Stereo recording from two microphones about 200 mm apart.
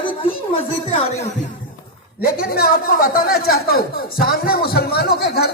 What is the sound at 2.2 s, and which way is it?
A man's voice, 50° left (ahead or behind).